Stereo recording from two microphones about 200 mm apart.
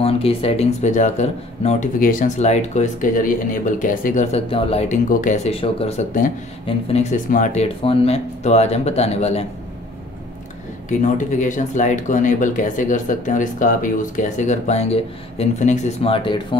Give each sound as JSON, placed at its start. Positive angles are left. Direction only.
{"t": 0.0, "sound": "speech", "side_deg": 30}
{"t": 10.9, "sound": "speech", "side_deg": 40}